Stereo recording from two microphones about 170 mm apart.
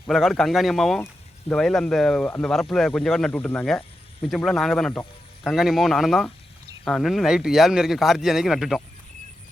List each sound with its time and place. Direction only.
0.1 s speech: centre (ahead or behind)